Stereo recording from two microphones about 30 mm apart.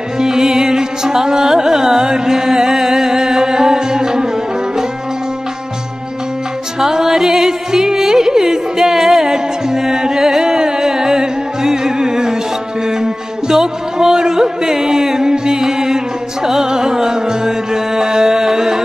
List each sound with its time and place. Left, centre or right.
0.2 s music: centre
6.8 s music: centre